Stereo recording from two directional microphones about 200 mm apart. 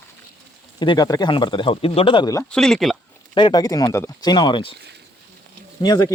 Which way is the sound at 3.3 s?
20° left (ahead or behind).